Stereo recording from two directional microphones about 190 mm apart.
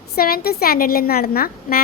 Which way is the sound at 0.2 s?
50° left (ahead or behind).